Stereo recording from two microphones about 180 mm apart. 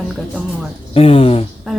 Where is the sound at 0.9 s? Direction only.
30° left (ahead or behind).